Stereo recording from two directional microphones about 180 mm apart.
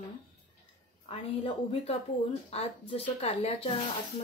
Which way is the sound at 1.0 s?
30° left (ahead or behind).